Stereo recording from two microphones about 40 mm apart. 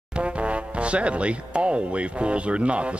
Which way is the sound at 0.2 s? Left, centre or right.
Right.